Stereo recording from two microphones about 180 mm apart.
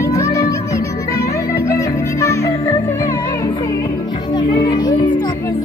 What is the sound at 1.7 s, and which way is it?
Music, 15° left (ahead or behind).